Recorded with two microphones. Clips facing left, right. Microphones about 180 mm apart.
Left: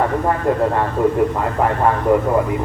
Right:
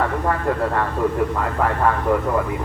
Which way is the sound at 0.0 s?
25° left (ahead or behind).